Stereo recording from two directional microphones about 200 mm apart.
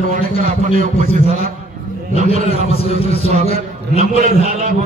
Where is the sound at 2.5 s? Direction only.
30° left (ahead or behind).